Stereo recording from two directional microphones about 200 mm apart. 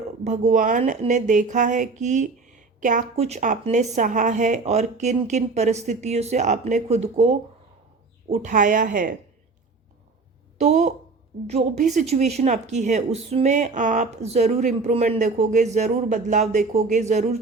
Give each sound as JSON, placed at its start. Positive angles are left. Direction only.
{"t": 0.3, "sound": "speech", "side_deg": -40}
{"t": 10.6, "sound": "speech", "side_deg": -35}